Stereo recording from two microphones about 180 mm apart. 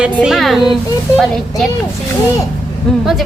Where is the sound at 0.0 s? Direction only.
5° right (ahead or behind).